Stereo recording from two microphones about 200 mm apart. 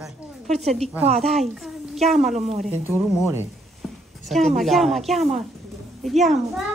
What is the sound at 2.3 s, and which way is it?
Speech, 35° right (ahead or behind).